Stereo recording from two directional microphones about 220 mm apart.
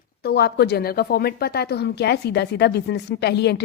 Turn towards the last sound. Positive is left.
turn(degrees=50)  # may be behind; listen again after turning